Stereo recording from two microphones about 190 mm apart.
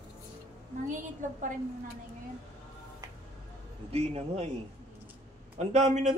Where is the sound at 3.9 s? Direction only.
35° right (ahead or behind).